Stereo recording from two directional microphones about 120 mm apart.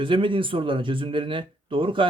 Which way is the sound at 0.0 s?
45° right (ahead or behind).